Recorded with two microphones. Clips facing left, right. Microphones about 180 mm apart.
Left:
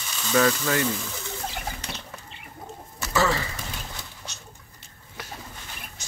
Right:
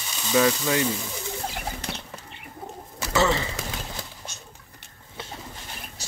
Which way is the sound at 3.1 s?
20° right (ahead or behind).